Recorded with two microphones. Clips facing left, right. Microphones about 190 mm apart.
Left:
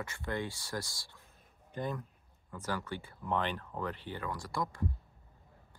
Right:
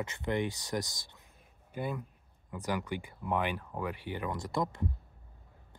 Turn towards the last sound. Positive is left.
turn(degrees=-20)  # may be behind; listen again after turning